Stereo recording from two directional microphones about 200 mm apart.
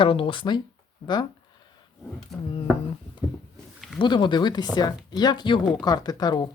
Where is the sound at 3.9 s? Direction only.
25° left (ahead or behind).